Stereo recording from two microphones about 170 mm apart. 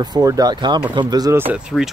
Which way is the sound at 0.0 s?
20° right (ahead or behind).